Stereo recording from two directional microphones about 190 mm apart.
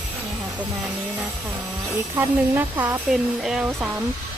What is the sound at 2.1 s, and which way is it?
Speech, 10° right (ahead or behind).